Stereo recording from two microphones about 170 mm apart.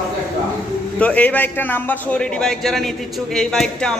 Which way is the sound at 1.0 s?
10° left (ahead or behind).